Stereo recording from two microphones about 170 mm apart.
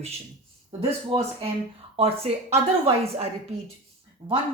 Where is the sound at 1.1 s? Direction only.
30° right (ahead or behind).